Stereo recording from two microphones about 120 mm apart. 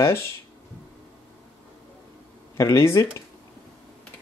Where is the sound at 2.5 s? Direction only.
25° left (ahead or behind).